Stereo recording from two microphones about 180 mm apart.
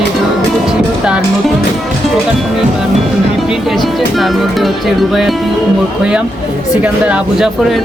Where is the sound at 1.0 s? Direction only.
5° right (ahead or behind).